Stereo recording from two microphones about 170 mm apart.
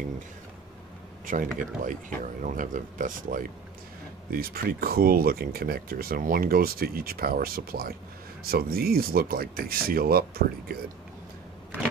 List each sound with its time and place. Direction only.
1.2 s speech: 50° right (ahead or behind)